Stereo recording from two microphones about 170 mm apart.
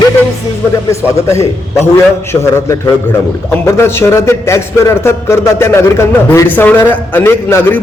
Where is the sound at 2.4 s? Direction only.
15° left (ahead or behind).